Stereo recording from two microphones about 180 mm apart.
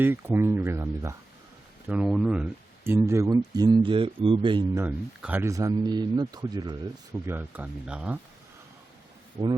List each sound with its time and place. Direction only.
0.0 s speech: 10° right (ahead or behind); by 4.6 s 30° right (ahead or behind)
4.7 s speech: 10° right (ahead or behind)
7.3 s speech: 10° right (ahead or behind)
9.4 s speech: 20° right (ahead or behind)